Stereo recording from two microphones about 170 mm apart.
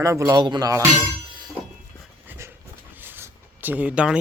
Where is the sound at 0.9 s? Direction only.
25° right (ahead or behind).